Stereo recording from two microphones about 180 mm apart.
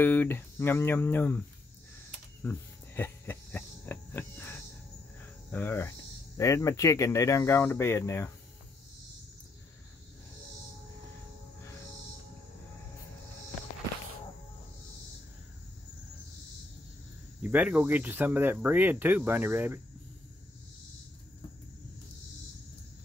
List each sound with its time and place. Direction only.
0.0 s speech: 10° left (ahead or behind)
2.4 s insect: 10° left (ahead or behind)
5.5 s speech: 10° left (ahead or behind)
17.4 s speech: 10° right (ahead or behind)